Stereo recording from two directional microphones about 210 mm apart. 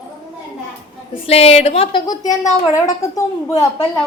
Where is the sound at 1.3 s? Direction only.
30° left (ahead or behind).